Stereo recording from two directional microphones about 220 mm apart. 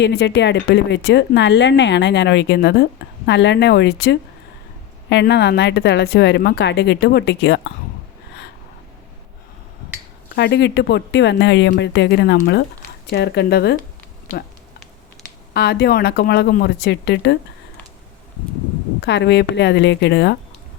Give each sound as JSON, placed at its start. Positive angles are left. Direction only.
{"t": 0.0, "sound": "speech", "side_deg": 50}
{"t": 10.3, "sound": "speech", "side_deg": 50}
{"t": 15.5, "sound": "speech", "side_deg": 45}
{"t": 19.0, "sound": "speech", "side_deg": 50}